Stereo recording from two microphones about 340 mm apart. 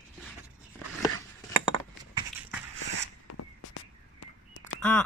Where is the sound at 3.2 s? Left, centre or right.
Left.